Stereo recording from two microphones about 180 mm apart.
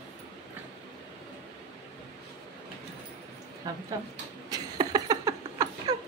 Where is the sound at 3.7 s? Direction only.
20° right (ahead or behind).